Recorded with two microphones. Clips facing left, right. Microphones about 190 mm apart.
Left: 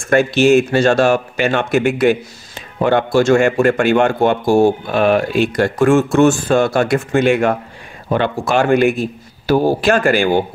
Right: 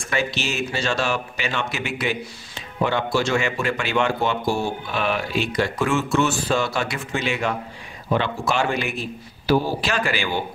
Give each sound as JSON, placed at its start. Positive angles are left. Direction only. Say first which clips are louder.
{"t": 0.1, "sound": "speech", "louder": "left 15 dB", "side_deg": 50}